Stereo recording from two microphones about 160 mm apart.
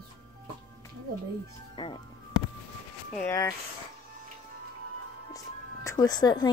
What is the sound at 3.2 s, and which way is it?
Speech, 20° left (ahead or behind).